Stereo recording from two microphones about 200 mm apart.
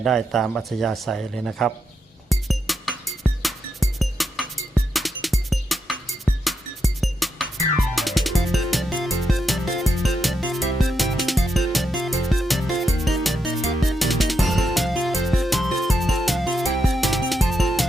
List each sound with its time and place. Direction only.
0.0 s speech: centre (ahead or behind)
2.3 s music: centre (ahead or behind)